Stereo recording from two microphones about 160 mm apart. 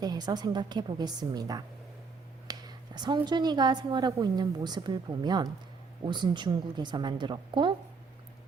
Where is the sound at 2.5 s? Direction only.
25° right (ahead or behind).